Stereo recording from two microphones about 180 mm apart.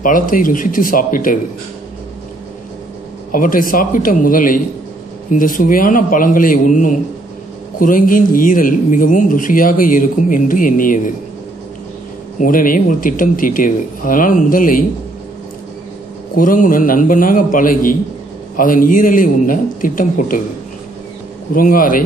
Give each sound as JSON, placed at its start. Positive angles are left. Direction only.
{"t": 0.0, "sound": "speech", "side_deg": 50}
{"t": 3.3, "sound": "speech", "side_deg": 50}
{"t": 12.4, "sound": "speech", "side_deg": 50}
{"t": 16.3, "sound": "speech", "side_deg": 50}
{"t": 21.5, "sound": "speech", "side_deg": 50}